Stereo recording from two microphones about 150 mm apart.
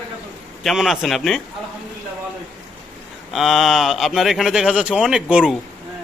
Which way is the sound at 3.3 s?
Centre (ahead or behind).